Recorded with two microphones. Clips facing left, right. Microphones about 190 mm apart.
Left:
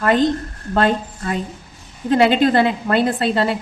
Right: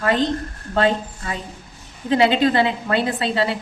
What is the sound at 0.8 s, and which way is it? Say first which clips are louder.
A woman's voice: left 1 dB; 50° left (ahead or behind).